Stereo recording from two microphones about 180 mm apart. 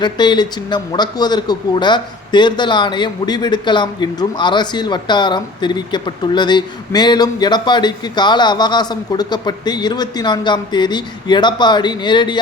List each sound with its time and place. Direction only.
0.0 s a man's voice: 25° left (ahead or behind)